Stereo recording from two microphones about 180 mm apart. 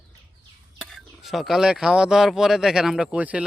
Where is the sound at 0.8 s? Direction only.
Centre (ahead or behind).